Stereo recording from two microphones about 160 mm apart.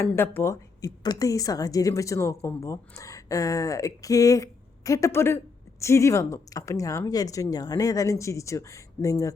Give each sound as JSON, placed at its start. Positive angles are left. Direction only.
{"t": 0.0, "sound": "a woman's voice", "side_deg": 15}